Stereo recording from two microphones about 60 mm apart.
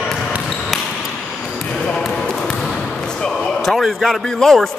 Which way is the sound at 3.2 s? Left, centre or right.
Centre.